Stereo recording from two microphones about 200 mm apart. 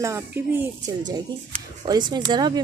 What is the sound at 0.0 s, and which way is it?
A woman's voice, 15° right (ahead or behind).